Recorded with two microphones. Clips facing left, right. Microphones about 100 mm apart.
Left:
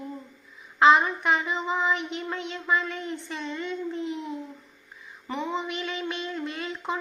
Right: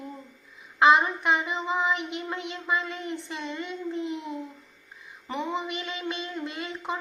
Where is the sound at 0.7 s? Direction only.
15° right (ahead or behind).